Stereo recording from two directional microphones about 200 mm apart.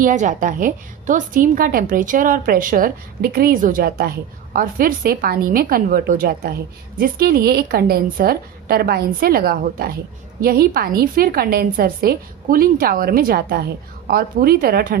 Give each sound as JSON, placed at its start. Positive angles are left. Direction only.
{"t": 0.0, "sound": "a woman's voice", "side_deg": -40}